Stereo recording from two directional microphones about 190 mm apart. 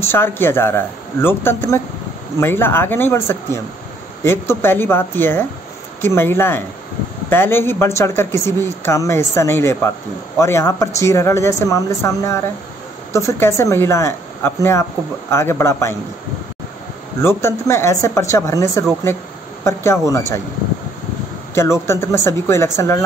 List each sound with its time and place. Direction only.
0.0 s speech: 10° left (ahead or behind)
17.2 s speech: 15° left (ahead or behind)
21.5 s speech: 15° left (ahead or behind)